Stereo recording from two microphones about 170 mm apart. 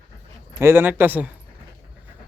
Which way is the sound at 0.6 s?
15° right (ahead or behind).